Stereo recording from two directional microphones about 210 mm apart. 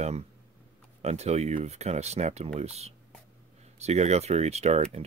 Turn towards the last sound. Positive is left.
turn(degrees=-30)  # may be behind; listen again after turning